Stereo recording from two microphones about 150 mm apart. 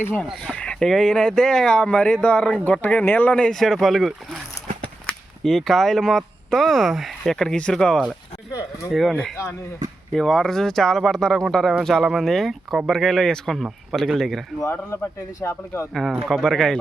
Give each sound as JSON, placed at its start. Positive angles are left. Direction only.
{"t": 0.0, "sound": "speech", "side_deg": 10}
{"t": 5.4, "sound": "speech", "side_deg": 0}
{"t": 14.6, "sound": "speech", "side_deg": 20}
{"t": 16.3, "sound": "speech", "side_deg": 0}